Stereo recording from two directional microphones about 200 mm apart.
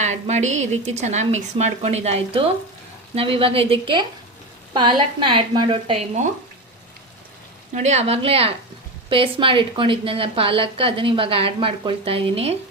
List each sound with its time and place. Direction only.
0.0 s a woman's voice: 35° right (ahead or behind)
7.7 s a woman's voice: 35° right (ahead or behind)